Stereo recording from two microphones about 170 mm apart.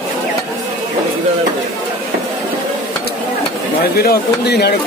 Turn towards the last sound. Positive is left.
turn(degrees=70)  # may be behind; listen again after turning